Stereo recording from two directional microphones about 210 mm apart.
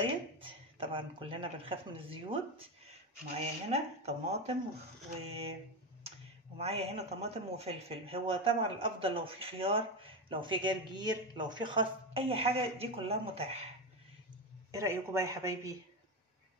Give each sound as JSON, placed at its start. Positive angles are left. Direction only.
{"t": 0.0, "sound": "speech", "side_deg": -25}
{"t": 6.6, "sound": "a man's voice", "side_deg": -30}
{"t": 14.7, "sound": "speech", "side_deg": -15}